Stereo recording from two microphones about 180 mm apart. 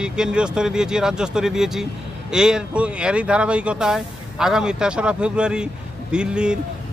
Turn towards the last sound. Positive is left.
turn(degrees=-5)  # may be behind; listen again after turning